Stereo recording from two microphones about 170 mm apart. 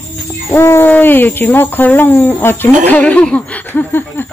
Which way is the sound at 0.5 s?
15° left (ahead or behind).